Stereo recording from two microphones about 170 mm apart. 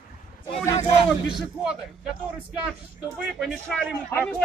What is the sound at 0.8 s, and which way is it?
Speech, 35° left (ahead or behind).